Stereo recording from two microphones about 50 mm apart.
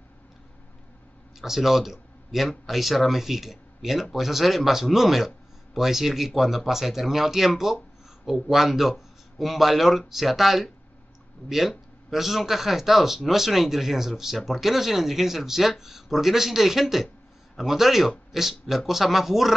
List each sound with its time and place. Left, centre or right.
1.4 s speech: centre